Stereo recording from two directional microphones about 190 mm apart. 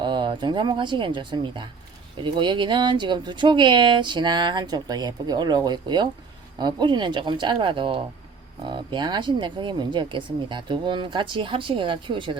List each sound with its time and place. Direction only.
0.0 s speech: 25° right (ahead or behind)